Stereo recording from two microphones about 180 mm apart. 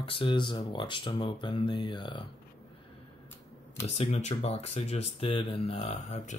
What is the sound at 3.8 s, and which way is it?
Speech, 35° left (ahead or behind).